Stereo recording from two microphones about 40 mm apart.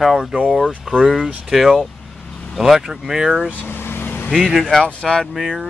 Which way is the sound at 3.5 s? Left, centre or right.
Left.